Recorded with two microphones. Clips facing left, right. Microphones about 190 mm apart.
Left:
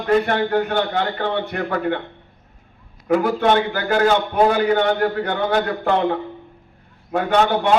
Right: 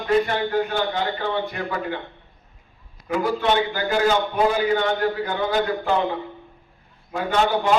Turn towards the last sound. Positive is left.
turn(degrees=55)  # may be behind; listen again after turning